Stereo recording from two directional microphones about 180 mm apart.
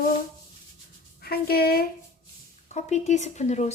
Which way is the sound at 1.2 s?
60° left (ahead or behind).